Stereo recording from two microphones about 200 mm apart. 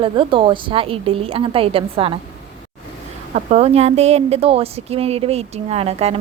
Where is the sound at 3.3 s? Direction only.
35° right (ahead or behind).